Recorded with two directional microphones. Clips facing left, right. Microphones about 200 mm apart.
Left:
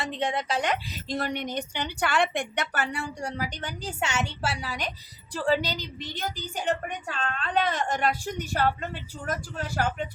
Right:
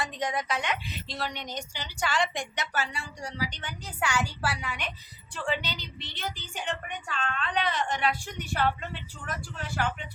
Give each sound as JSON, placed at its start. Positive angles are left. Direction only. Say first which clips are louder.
{"t": 0.0, "sound": "a woman's voice", "louder": "left 2 dB", "side_deg": 25}